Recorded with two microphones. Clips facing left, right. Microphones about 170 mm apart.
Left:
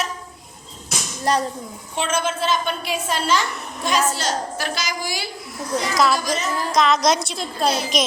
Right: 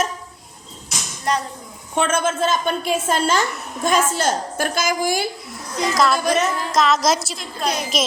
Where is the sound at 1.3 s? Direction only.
35° left (ahead or behind).